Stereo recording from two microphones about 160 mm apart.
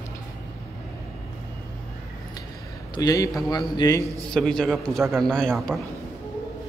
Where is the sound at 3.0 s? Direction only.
20° left (ahead or behind).